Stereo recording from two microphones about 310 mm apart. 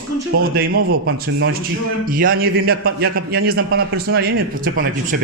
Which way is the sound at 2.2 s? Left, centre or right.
Right.